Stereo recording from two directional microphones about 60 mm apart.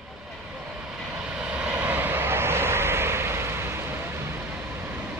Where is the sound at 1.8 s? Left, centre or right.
Right.